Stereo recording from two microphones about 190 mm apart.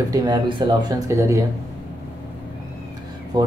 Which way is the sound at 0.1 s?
20° right (ahead or behind).